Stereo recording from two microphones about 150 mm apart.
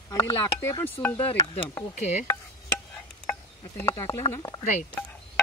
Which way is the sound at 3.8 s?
20° left (ahead or behind).